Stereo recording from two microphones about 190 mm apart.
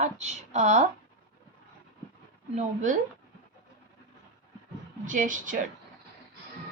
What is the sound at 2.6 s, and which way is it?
Speech, 40° right (ahead or behind).